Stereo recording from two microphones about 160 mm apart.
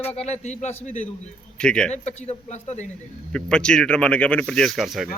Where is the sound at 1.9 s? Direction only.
45° left (ahead or behind).